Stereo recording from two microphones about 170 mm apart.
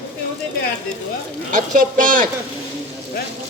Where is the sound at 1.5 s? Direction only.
50° right (ahead or behind).